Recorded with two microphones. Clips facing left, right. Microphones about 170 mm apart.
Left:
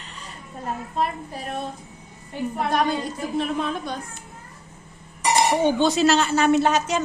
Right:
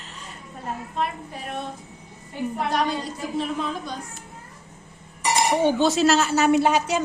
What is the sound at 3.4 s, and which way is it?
Speech, 60° left (ahead or behind).